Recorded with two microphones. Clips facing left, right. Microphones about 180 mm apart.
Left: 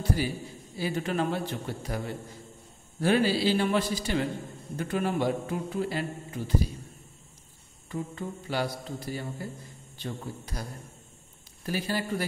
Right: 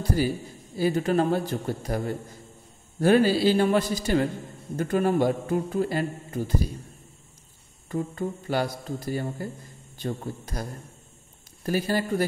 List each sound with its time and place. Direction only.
0.7 s a man's voice: 40° right (ahead or behind)
7.9 s a man's voice: 45° right (ahead or behind)